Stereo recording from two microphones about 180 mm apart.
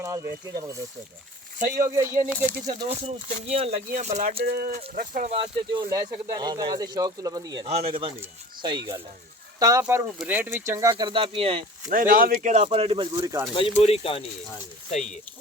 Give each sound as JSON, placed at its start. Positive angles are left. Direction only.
{"t": 0.0, "sound": "speech", "side_deg": -15}
{"t": 1.8, "sound": "speech", "side_deg": -15}
{"t": 2.6, "sound": "speech", "side_deg": -35}
{"t": 4.4, "sound": "speech", "side_deg": -60}
{"t": 5.3, "sound": "speech", "side_deg": -25}
{"t": 11.9, "sound": "speech", "side_deg": -50}
{"t": 13.5, "sound": "speech", "side_deg": 30}